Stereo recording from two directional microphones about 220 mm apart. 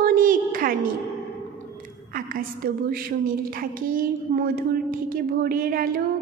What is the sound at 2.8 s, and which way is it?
A woman's voice, 40° right (ahead or behind).